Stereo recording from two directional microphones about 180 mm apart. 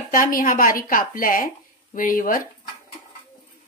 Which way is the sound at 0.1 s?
50° left (ahead or behind).